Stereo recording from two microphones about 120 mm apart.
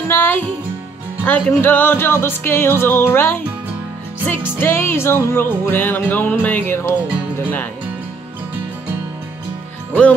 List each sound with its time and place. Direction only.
0.1 s music: 15° left (ahead or behind)
4.6 s music: 20° left (ahead or behind)